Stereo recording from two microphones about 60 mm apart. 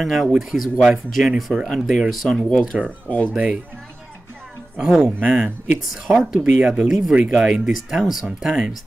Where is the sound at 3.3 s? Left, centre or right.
Centre.